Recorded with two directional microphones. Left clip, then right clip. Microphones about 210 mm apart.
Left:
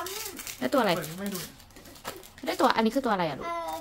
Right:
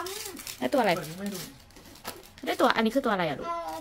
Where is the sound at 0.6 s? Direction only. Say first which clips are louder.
Even; 10° left (ahead or behind).